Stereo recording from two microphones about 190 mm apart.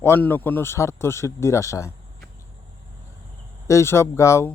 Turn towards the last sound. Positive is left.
turn(degrees=15)  # may be behind; listen again after turning